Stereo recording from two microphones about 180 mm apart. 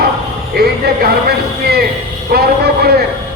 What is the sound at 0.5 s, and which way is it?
Music, 60° right (ahead or behind).